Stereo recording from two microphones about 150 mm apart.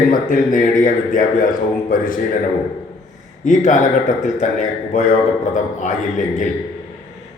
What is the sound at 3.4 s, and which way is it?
A man's voice, 55° left (ahead or behind).